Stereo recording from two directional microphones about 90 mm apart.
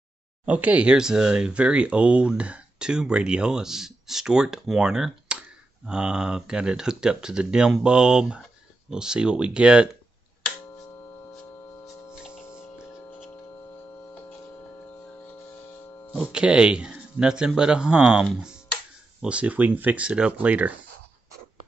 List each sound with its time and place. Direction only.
0.5 s speech: 15° right (ahead or behind)
12.1 s hum: 5° right (ahead or behind)
16.3 s speech: 10° right (ahead or behind)